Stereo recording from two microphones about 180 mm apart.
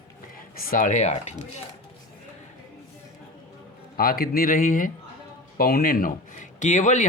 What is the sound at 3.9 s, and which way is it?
Speech, 55° left (ahead or behind).